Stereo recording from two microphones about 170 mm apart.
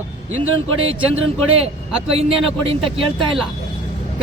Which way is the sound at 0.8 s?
35° right (ahead or behind).